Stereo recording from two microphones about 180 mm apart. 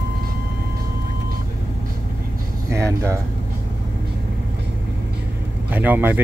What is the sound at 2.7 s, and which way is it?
Speech, 15° right (ahead or behind).